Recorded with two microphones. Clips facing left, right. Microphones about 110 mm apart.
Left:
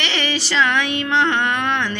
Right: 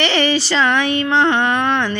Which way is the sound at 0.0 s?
40° right (ahead or behind).